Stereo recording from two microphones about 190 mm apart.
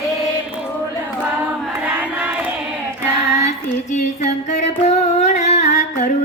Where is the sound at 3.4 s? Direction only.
35° left (ahead or behind).